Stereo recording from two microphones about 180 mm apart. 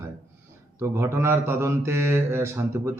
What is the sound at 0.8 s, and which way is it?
Mantra, 15° right (ahead or behind).